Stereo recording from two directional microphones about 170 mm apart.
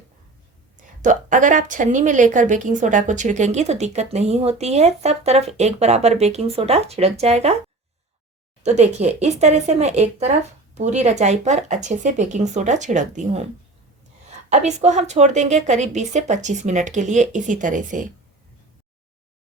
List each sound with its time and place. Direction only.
0.8 s a woman's voice: 50° right (ahead or behind)
8.6 s a woman's voice: 40° right (ahead or behind)